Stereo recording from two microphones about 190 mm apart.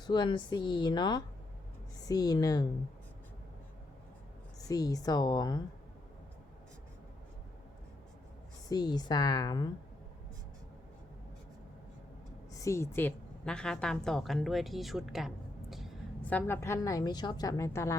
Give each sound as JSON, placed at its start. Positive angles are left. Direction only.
{"t": 0.0, "sound": "speech", "side_deg": 25}
{"t": 4.7, "sound": "speech", "side_deg": 20}
{"t": 8.7, "sound": "speech", "side_deg": 20}
{"t": 12.5, "sound": "a woman's voice", "side_deg": 15}